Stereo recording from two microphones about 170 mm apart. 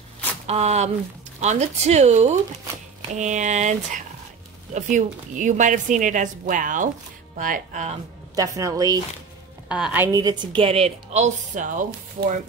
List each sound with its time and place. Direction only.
0.5 s a woman's voice: 40° right (ahead or behind)
8.4 s a woman's voice: 20° right (ahead or behind)
9.7 s a woman's voice: 5° right (ahead or behind)
10.0 s a woman's voice: 25° right (ahead or behind); by 11.8 s 50° right (ahead or behind)